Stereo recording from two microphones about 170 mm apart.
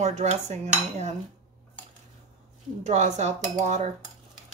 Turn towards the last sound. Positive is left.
turn(degrees=-45)  # may be behind; listen again after turning